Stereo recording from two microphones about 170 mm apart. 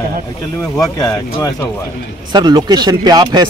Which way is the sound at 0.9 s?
20° left (ahead or behind).